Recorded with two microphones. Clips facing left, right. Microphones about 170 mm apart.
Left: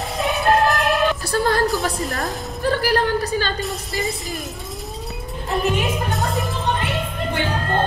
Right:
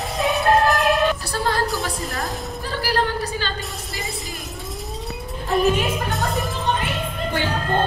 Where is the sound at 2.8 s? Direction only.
50° left (ahead or behind).